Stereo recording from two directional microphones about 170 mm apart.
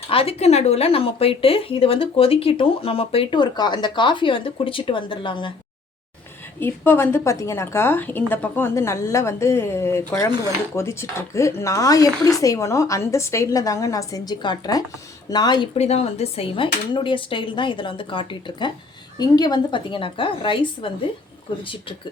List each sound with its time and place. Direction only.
0.1 s speech: 35° left (ahead or behind)
6.6 s a woman's voice: 15° left (ahead or behind)
15.7 s speech: 40° left (ahead or behind)